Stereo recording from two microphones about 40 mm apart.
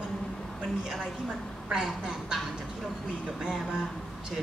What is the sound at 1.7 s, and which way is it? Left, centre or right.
Speech, centre.